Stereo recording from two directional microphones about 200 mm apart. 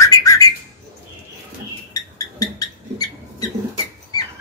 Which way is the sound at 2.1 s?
20° left (ahead or behind).